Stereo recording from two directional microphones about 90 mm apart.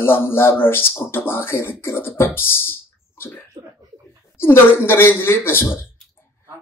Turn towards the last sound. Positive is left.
turn(degrees=25)  # may be behind; listen again after turning